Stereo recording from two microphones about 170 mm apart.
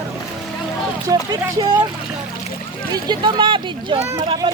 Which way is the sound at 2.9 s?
25° right (ahead or behind).